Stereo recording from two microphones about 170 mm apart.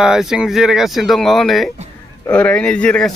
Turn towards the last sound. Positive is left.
turn(degrees=5)  # may be behind; listen again after turning